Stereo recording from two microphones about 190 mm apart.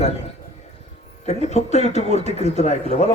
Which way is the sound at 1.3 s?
35° left (ahead or behind).